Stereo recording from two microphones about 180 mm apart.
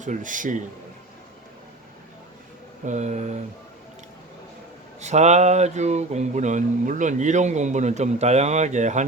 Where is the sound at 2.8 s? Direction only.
40° right (ahead or behind).